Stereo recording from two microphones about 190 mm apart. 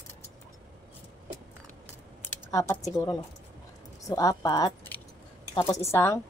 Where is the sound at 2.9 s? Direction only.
20° left (ahead or behind).